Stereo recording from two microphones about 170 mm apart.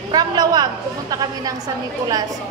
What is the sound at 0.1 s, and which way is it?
Speech, 25° right (ahead or behind).